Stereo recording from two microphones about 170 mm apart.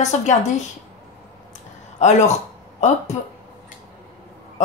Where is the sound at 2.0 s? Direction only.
40° left (ahead or behind).